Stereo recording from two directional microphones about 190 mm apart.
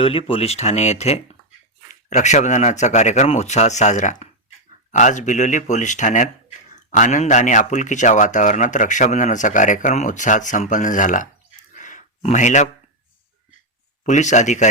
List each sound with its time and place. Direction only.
0.0 s speech: 30° left (ahead or behind)
11.7 s a sound: 40° left (ahead or behind)
14.0 s speech: 40° left (ahead or behind)